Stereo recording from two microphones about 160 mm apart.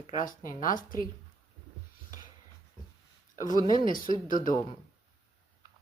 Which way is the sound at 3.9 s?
60° left (ahead or behind).